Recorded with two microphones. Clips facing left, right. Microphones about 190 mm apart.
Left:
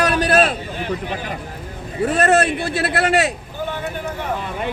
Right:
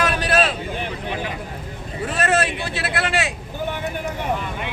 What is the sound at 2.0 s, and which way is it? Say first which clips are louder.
Speech: left 5 dB; 40° left (ahead or behind).